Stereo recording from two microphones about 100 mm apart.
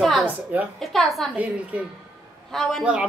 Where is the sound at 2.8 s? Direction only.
10° right (ahead or behind).